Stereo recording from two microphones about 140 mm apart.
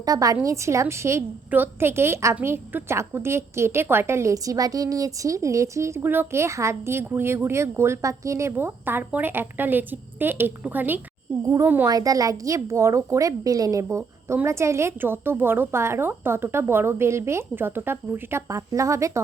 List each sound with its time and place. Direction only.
0.0 s a woman's voice: 25° right (ahead or behind)